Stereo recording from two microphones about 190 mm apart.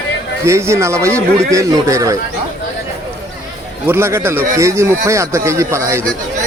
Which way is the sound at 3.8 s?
15° right (ahead or behind).